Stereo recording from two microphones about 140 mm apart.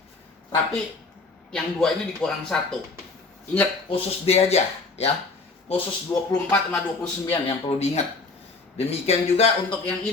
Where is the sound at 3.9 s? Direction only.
50° left (ahead or behind).